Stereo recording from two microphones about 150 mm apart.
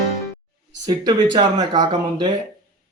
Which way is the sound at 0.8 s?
25° right (ahead or behind).